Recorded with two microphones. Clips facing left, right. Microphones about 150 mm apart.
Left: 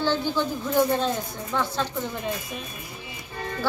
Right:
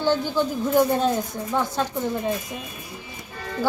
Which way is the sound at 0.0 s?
15° right (ahead or behind).